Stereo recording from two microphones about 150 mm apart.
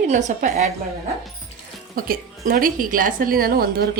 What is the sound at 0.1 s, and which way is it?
Speech, 55° right (ahead or behind).